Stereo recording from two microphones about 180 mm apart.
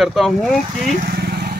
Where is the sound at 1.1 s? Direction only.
60° right (ahead or behind).